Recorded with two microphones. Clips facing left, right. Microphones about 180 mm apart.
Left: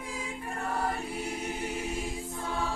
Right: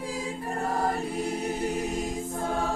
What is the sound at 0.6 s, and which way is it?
Choir, 40° right (ahead or behind).